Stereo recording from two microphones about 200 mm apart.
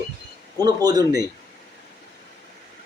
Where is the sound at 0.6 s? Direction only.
20° right (ahead or behind).